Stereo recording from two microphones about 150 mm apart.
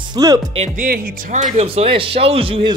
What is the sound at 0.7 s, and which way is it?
Speech, 75° right (ahead or behind).